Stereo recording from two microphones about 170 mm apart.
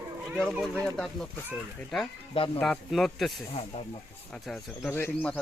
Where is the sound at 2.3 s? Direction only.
30° left (ahead or behind).